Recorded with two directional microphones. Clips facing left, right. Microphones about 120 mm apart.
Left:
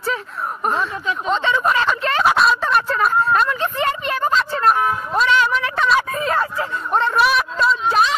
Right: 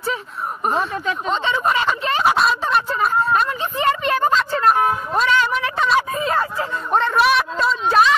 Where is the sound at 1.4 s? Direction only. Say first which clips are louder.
Left 1 dB; 15° right (ahead or behind).